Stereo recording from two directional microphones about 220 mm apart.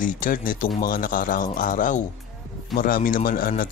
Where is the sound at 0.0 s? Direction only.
40° left (ahead or behind).